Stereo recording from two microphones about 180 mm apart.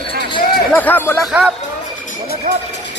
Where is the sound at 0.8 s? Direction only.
10° left (ahead or behind).